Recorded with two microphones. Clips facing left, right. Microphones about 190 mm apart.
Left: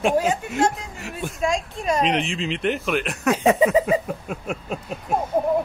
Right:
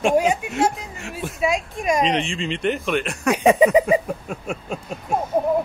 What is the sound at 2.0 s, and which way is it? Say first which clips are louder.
Speech: right 1 dB; 5° left (ahead or behind).